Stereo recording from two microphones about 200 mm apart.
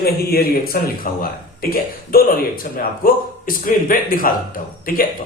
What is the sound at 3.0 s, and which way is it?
Speech, 45° left (ahead or behind).